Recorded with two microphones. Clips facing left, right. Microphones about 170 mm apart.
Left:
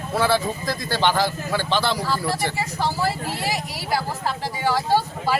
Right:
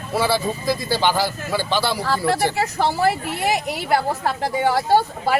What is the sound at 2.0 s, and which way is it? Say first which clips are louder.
Speech: right 4 dB; 65° right (ahead or behind).